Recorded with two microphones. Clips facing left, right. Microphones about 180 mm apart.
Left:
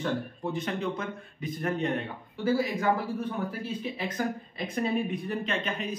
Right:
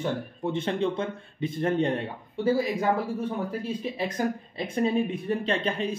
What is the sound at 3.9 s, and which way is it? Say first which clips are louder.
Speech: right 4 dB; 25° right (ahead or behind).